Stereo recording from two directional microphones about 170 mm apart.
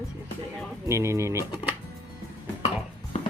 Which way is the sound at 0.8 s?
15° right (ahead or behind).